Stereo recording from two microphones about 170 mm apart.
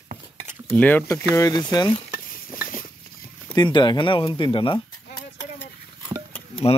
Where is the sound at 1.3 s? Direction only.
20° left (ahead or behind).